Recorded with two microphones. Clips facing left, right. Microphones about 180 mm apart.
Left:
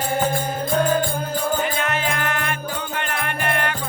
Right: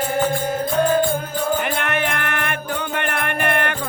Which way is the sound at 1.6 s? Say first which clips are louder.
Right 1 dB; 60° right (ahead or behind).